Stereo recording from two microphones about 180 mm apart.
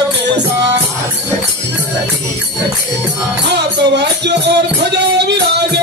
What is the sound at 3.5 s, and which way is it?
Music, 70° right (ahead or behind).